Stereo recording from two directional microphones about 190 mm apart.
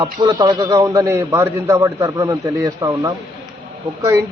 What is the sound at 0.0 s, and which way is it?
A man's voice, 20° right (ahead or behind).